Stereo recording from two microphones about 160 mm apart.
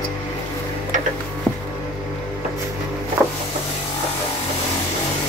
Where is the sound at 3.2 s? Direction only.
15° right (ahead or behind).